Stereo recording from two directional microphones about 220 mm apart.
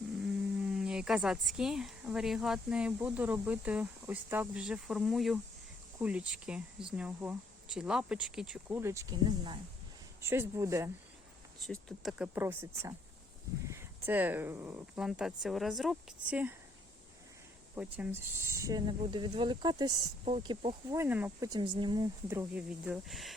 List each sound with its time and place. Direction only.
0.6 s speech: 5° right (ahead or behind)
11.6 s speech: centre (ahead or behind)
17.9 s speech: 10° right (ahead or behind)
20.9 s speech: 10° right (ahead or behind)